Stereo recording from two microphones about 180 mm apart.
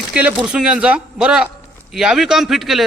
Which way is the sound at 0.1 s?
5° right (ahead or behind).